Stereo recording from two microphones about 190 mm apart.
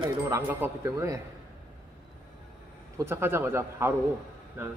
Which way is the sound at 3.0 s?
10° right (ahead or behind).